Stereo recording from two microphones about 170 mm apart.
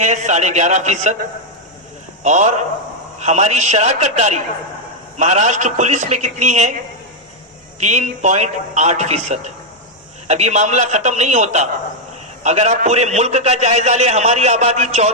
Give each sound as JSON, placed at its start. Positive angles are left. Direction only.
{"t": 0.0, "sound": "a man's voice", "side_deg": -45}
{"t": 7.8, "sound": "a man's voice", "side_deg": -45}